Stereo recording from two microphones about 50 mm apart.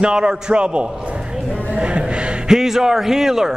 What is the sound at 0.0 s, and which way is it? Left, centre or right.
A man's voice, centre.